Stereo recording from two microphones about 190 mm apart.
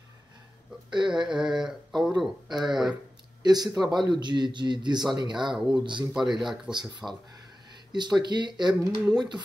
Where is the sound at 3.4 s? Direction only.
20° right (ahead or behind).